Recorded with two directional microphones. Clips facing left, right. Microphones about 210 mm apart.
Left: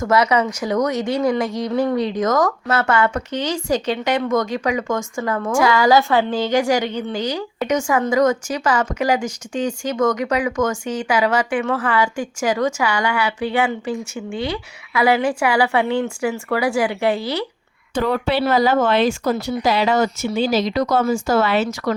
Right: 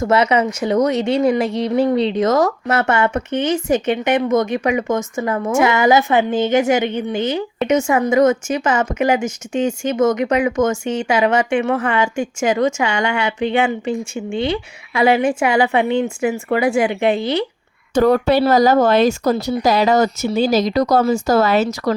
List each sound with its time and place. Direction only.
0.0 s a woman's voice: 25° right (ahead or behind)
17.9 s speech: 45° right (ahead or behind)